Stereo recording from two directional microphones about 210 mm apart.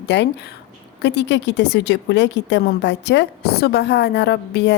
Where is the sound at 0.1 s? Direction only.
55° left (ahead or behind).